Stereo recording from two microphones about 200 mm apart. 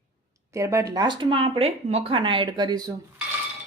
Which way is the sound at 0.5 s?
15° right (ahead or behind).